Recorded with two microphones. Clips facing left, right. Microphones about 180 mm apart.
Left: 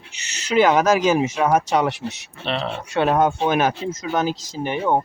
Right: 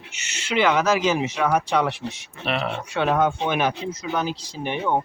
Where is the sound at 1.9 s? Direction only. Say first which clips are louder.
Left 2 dB; 75° left (ahead or behind).